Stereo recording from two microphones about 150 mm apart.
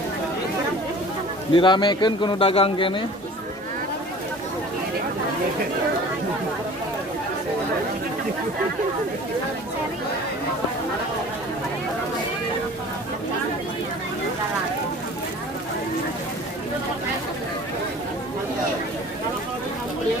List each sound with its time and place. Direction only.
1.5 s a man's voice: 30° left (ahead or behind)